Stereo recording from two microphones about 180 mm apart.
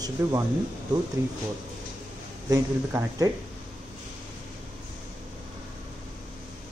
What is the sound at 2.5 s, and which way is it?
Speech, 15° right (ahead or behind).